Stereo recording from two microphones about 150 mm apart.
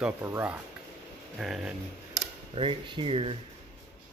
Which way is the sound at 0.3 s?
10° right (ahead or behind).